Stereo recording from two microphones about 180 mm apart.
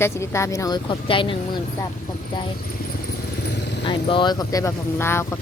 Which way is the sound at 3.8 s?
25° left (ahead or behind).